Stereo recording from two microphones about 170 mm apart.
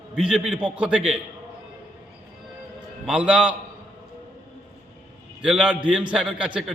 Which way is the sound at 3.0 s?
5° right (ahead or behind).